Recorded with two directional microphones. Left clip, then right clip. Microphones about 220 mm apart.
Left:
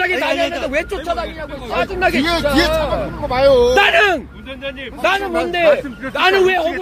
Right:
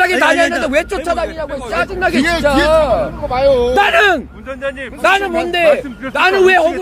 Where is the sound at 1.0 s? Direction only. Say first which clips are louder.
Right 4 dB; 45° right (ahead or behind).